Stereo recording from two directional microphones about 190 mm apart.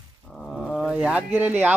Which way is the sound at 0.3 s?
Centre (ahead or behind).